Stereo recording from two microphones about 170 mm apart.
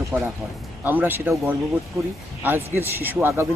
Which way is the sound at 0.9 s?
10° right (ahead or behind).